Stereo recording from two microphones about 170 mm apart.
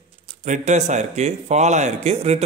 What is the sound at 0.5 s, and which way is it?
A man's voice, 45° right (ahead or behind).